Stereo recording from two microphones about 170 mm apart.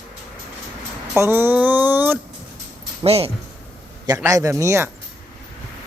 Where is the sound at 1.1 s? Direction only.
15° right (ahead or behind).